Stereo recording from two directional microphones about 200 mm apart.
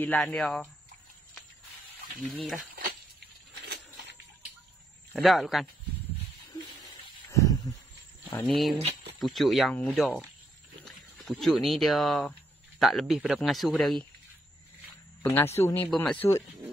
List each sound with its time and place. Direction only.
0.0 s speech: 5° left (ahead or behind)
2.7 s a sound: 55° right (ahead or behind)
5.1 s speech: centre (ahead or behind)
7.2 s a sound: 15° left (ahead or behind)
8.3 s speech: 5° left (ahead or behind)
8.7 s speech: 30° right (ahead or behind)
9.2 s speech: centre (ahead or behind)
15.2 s speech: 10° left (ahead or behind)